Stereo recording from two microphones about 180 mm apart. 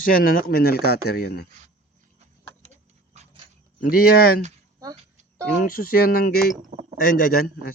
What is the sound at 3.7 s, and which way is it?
Speech, 55° left (ahead or behind).